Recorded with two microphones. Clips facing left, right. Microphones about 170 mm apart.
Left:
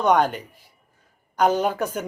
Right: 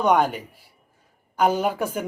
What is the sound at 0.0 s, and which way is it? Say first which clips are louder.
A man's voice: even; 5° right (ahead or behind).